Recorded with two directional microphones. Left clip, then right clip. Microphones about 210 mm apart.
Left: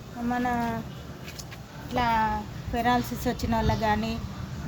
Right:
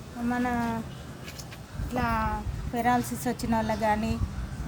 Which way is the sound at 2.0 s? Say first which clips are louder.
Left 4 dB; 20° right (ahead or behind).